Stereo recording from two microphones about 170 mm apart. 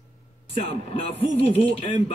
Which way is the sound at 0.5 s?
35° left (ahead or behind).